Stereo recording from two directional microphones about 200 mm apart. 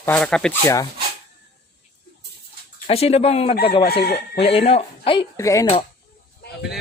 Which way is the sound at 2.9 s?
30° left (ahead or behind).